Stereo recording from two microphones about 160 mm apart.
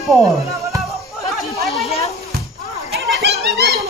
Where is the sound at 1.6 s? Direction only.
Centre (ahead or behind).